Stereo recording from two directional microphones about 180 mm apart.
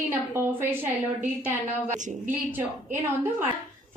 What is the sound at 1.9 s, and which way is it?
Speech, 45° right (ahead or behind).